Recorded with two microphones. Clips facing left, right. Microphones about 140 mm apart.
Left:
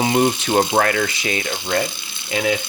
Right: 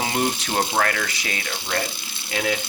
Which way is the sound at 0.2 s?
30° left (ahead or behind).